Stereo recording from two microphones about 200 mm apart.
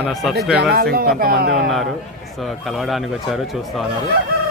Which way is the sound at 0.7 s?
50° right (ahead or behind).